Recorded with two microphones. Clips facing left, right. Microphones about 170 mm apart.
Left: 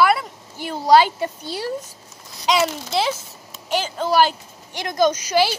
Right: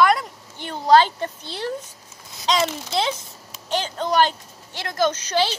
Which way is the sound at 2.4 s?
5° left (ahead or behind).